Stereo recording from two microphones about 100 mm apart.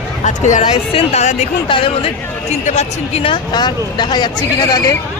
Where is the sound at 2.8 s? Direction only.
80° left.